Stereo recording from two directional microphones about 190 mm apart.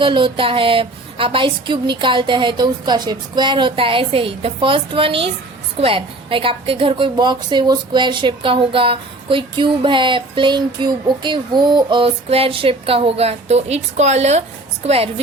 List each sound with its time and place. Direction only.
0.0 s a woman's voice: 25° right (ahead or behind)